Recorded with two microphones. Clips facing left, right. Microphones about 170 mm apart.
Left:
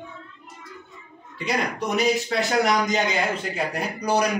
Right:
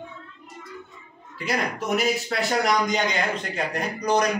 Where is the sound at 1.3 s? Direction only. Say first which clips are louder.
Left 1 dB; centre (ahead or behind).